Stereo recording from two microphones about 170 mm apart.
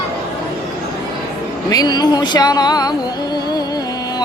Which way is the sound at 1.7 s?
25° left (ahead or behind).